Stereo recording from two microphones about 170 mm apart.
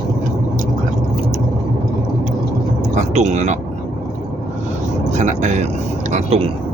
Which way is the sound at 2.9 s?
40° right (ahead or behind).